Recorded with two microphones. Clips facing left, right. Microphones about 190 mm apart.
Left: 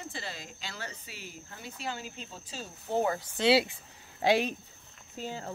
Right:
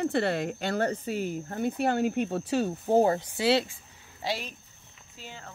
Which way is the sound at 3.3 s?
Centre (ahead or behind).